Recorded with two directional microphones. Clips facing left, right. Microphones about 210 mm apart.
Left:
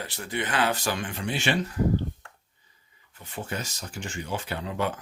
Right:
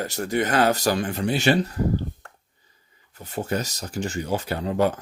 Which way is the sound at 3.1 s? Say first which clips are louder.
Right 7 dB; 40° right (ahead or behind).